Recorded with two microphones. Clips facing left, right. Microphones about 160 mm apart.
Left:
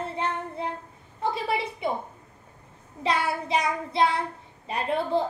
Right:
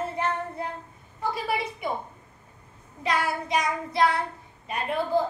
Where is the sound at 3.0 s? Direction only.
30° left (ahead or behind).